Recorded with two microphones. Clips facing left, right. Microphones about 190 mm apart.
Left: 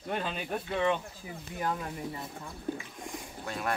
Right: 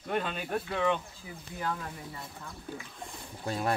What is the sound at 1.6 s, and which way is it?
Speech, 20° left (ahead or behind).